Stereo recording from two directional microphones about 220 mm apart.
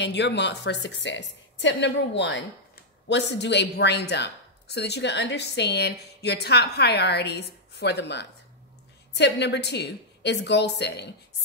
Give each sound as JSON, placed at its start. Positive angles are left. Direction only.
{"t": 0.0, "sound": "speech", "side_deg": 50}